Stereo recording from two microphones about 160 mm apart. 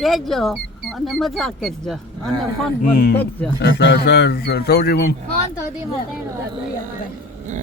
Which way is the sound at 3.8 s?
90° left.